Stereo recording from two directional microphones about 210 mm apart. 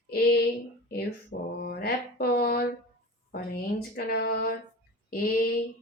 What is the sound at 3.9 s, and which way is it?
Speech, 50° left (ahead or behind).